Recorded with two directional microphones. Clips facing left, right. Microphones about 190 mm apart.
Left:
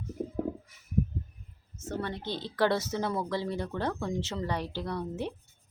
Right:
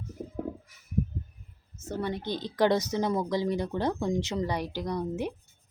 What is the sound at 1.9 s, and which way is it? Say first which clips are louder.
A woman's voice: right 3 dB; 15° right (ahead or behind).